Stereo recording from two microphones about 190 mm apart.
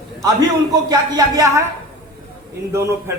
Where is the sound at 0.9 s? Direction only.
20° right (ahead or behind).